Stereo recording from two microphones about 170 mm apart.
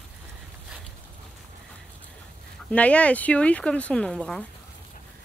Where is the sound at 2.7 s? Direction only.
10° left (ahead or behind).